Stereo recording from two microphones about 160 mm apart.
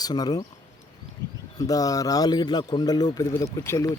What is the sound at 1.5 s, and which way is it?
Speech, 20° left (ahead or behind).